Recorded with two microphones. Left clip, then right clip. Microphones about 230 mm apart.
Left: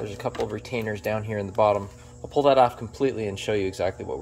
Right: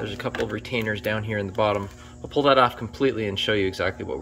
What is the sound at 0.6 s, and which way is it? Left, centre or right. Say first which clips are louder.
Speech: right 3 dB; centre.